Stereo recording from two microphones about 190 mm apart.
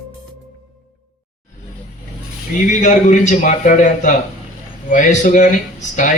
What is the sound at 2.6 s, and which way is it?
A man's voice, 40° left (ahead or behind).